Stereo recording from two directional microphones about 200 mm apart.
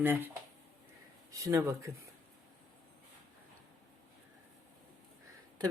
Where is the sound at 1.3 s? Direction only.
15° right (ahead or behind).